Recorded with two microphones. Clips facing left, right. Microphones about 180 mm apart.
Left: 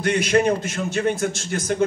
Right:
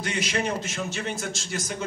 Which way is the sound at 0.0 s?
55° left (ahead or behind).